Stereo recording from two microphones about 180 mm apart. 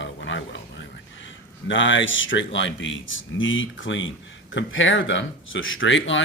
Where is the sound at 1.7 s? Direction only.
90° left.